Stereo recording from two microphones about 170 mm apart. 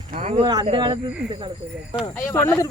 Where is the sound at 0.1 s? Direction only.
40° right (ahead or behind).